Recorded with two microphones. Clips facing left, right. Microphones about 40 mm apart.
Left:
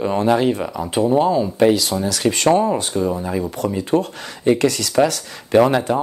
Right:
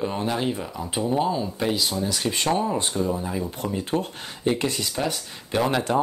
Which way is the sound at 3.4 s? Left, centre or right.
Left.